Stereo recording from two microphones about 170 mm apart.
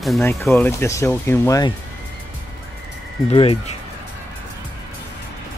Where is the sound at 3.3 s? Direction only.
35° left (ahead or behind).